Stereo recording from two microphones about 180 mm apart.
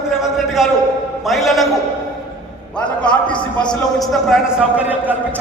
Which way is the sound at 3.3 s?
25° left (ahead or behind).